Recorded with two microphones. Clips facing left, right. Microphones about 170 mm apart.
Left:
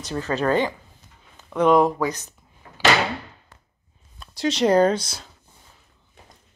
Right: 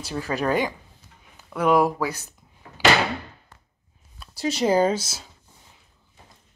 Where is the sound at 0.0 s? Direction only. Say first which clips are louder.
Left 2 dB; 10° right (ahead or behind).